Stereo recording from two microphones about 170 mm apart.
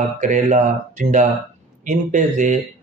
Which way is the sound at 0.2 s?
45° right (ahead or behind).